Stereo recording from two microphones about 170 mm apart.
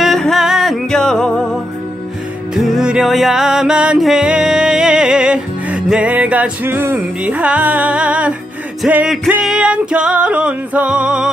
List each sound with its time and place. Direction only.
0.0 s music: centre (ahead or behind)